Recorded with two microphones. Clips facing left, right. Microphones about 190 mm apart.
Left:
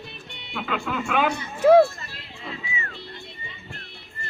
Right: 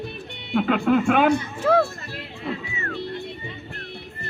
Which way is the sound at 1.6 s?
15° left (ahead or behind).